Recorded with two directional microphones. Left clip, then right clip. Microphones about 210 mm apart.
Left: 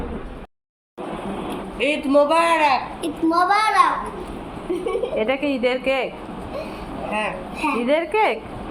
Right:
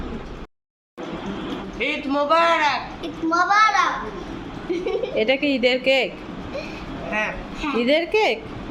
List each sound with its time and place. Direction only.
1.8 s a child's voice: 10° right (ahead or behind)
4.7 s a sound: 15° left (ahead or behind)
5.1 s a child's voice: 15° right (ahead or behind)
7.6 s a child's voice: 10° right (ahead or behind)